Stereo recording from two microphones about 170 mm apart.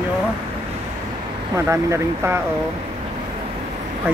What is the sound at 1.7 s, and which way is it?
Speech, 15° right (ahead or behind).